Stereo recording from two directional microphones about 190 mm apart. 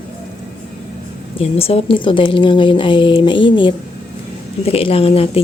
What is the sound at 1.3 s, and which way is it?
A woman's voice, 30° left (ahead or behind).